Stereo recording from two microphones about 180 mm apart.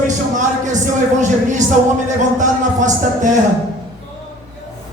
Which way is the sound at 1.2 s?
45° right (ahead or behind).